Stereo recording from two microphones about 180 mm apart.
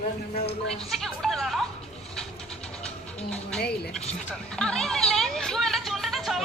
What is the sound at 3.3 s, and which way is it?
Speech, 5° left (ahead or behind).